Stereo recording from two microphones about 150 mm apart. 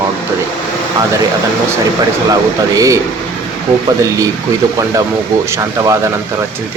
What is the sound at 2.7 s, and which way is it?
Speech, 20° right (ahead or behind).